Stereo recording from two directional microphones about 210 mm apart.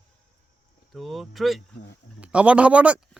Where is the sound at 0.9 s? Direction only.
Centre (ahead or behind).